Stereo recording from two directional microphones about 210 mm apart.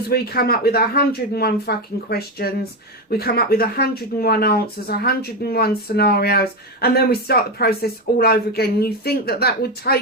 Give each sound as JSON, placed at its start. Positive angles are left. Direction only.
{"t": 0.1, "sound": "speech", "side_deg": 45}